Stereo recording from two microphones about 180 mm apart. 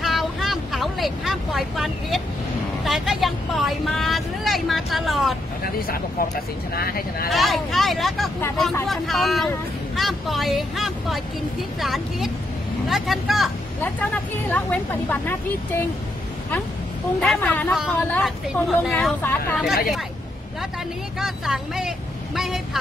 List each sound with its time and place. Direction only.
0.0 s vehicle: centre (ahead or behind)
2.8 s speech: centre (ahead or behind)
5.8 s speech: 55° left (ahead or behind)
7.2 s speech: centre (ahead or behind)
17.2 s speech: 5° left (ahead or behind)
21.2 s speech: centre (ahead or behind)